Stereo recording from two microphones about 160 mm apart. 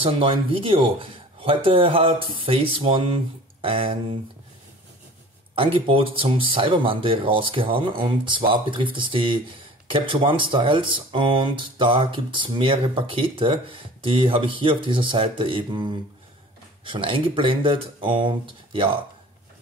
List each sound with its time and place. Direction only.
0.0 s speech: 35° right (ahead or behind)
5.5 s speech: 35° right (ahead or behind)